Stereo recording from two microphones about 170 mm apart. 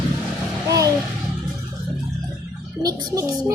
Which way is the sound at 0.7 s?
20° right (ahead or behind).